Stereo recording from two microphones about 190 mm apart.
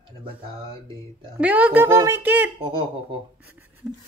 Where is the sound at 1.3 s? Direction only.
10° right (ahead or behind).